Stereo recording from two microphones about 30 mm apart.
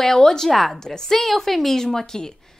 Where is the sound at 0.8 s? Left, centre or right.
Centre.